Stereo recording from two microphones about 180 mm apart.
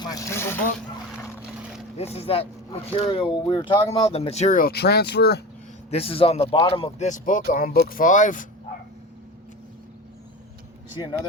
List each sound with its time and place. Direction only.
0.0 s vehicle: 20° left (ahead or behind)
2.0 s speech: 35° left (ahead or behind); by 5.4 s 65° left (ahead or behind)
5.9 s speech: 30° left (ahead or behind)
7.1 s speech: 45° left (ahead or behind)